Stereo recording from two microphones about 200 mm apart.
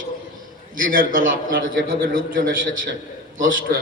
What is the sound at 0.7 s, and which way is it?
A man's voice, 45° right (ahead or behind).